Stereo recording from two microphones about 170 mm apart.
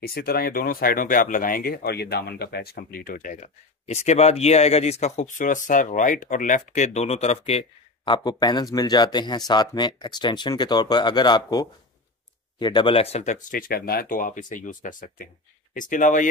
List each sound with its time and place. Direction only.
0.0 s speech: 65° left (ahead or behind)